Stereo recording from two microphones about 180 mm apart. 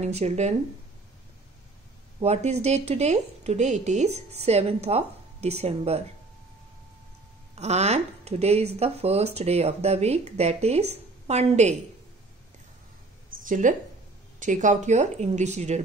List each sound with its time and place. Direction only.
0.0 s speech: 35° right (ahead or behind)
2.1 s speech: 35° right (ahead or behind)
7.5 s speech: 40° right (ahead or behind)
13.4 s speech: 45° right (ahead or behind)